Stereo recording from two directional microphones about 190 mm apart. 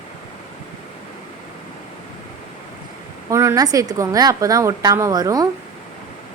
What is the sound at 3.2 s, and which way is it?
A woman's voice, 15° right (ahead or behind).